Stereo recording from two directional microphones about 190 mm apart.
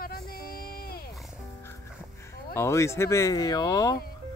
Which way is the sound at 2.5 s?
15° left (ahead or behind).